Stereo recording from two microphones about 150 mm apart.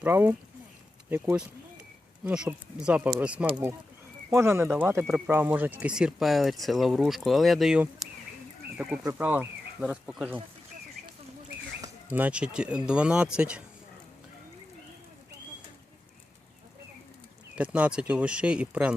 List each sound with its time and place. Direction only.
0.0 s speech: 10° right (ahead or behind)
11.8 s speech: 10° right (ahead or behind)
17.5 s speech: 10° right (ahead or behind)